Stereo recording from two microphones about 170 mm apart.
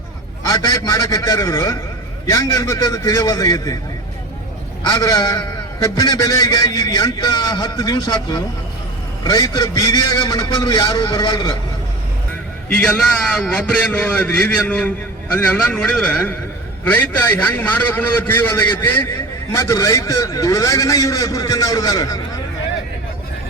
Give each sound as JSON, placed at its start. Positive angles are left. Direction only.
{"t": 0.4, "sound": "a man's voice", "side_deg": 25}
{"t": 4.9, "sound": "a man's voice", "side_deg": 25}
{"t": 12.6, "sound": "a man's voice", "side_deg": 5}
{"t": 17.4, "sound": "a man's voice", "side_deg": 10}